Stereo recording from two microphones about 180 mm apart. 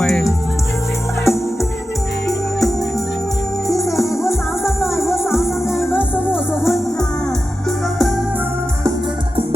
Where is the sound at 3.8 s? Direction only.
15° left (ahead or behind).